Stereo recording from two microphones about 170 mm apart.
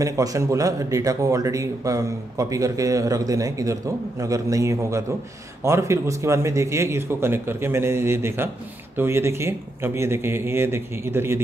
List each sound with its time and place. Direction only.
0.0 s a man's voice: 20° right (ahead or behind)